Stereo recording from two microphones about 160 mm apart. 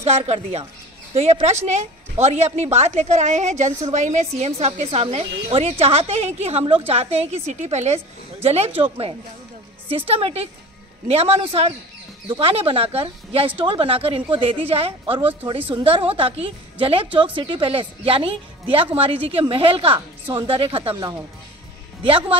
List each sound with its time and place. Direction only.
0.0 s a woman's voice: 40° right (ahead or behind)
20.9 s a woman's voice: 25° right (ahead or behind)